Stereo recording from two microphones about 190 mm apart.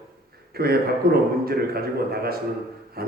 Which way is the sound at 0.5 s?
55° right (ahead or behind).